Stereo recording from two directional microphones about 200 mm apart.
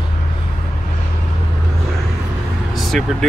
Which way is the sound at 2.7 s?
Centre (ahead or behind).